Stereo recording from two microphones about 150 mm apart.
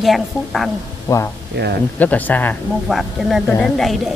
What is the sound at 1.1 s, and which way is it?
Speech, 20° left (ahead or behind).